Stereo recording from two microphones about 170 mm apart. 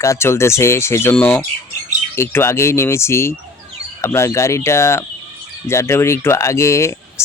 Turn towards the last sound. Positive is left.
turn(degrees=15)  # may be behind; listen again after turning